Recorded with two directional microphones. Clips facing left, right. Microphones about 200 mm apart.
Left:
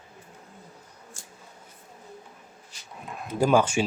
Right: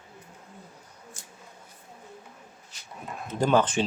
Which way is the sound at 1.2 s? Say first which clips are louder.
Even; 20° right (ahead or behind).